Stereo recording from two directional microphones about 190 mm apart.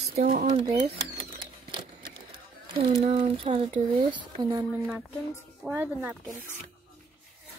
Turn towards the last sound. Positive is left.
turn(degrees=-10)  # may be behind; listen again after turning